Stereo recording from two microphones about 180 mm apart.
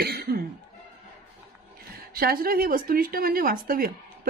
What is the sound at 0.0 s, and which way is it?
Cough, 60° right (ahead or behind).